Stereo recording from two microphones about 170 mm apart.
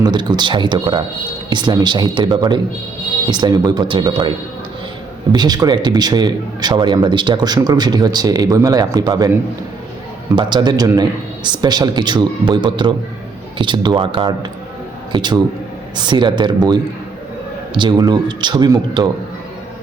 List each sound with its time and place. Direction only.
0.0 s a man's voice: 25° right (ahead or behind)
10.3 s a man's voice: 25° right (ahead or behind)